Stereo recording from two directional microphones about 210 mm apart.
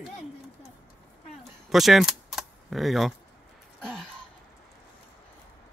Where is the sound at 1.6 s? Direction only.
Centre (ahead or behind).